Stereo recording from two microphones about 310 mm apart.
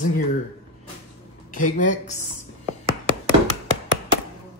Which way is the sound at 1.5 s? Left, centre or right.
Left.